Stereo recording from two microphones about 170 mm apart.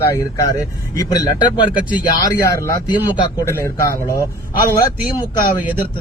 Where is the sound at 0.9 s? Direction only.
20° left (ahead or behind).